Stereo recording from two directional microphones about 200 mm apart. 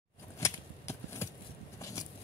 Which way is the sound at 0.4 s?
15° left (ahead or behind).